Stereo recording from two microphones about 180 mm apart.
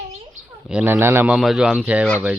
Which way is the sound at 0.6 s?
10° right (ahead or behind).